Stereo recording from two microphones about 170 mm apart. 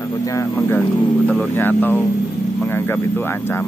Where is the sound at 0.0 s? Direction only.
20° left (ahead or behind).